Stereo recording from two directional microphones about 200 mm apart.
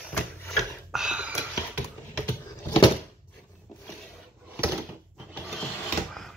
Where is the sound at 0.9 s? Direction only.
5° right (ahead or behind).